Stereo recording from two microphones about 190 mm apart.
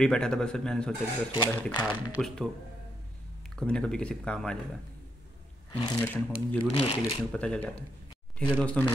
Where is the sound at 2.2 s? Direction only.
Centre (ahead or behind).